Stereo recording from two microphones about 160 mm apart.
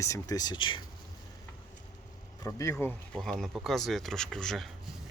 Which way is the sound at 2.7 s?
5° left (ahead or behind).